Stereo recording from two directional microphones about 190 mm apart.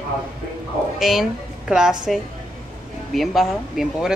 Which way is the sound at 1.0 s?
Centre (ahead or behind).